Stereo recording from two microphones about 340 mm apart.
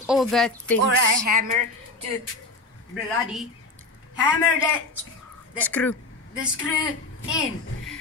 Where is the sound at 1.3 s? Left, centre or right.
Right.